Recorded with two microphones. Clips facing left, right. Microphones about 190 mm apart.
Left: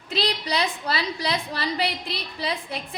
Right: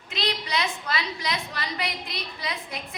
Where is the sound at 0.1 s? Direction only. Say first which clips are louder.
Left 3 dB; 35° left (ahead or behind).